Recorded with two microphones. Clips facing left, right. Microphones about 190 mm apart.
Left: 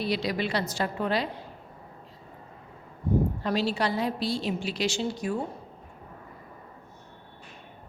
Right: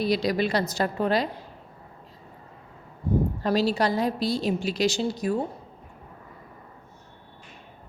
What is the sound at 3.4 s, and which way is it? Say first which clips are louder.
A woman's voice: right 4 dB; 40° right (ahead or behind).